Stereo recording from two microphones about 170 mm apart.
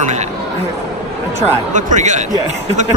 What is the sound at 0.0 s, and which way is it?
Speech, 45° right (ahead or behind).